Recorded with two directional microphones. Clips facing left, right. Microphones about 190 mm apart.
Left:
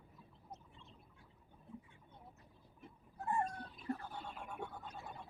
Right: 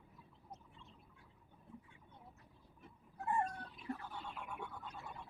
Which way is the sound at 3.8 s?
40° left (ahead or behind).